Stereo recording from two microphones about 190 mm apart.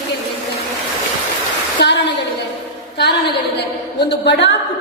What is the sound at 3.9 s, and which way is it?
Speech, 65° left (ahead or behind).